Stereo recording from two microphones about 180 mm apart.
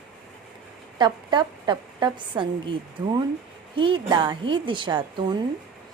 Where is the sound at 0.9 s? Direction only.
25° right (ahead or behind).